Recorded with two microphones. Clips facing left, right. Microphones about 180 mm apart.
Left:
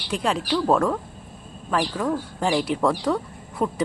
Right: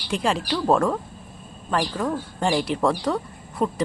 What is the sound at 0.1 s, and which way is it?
Speech, centre (ahead or behind).